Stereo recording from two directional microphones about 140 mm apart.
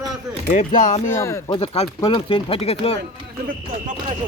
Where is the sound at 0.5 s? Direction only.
60° left (ahead or behind).